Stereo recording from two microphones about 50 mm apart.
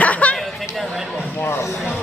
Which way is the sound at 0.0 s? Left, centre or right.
Left.